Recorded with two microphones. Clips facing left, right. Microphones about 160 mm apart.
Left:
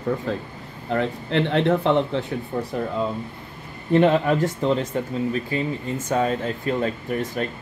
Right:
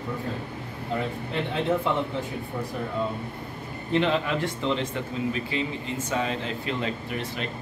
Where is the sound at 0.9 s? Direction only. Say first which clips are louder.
Left 7 dB; 75° left (ahead or behind).